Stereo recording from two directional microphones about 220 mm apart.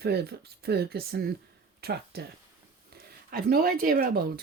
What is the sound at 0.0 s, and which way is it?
Speech, 45° right (ahead or behind).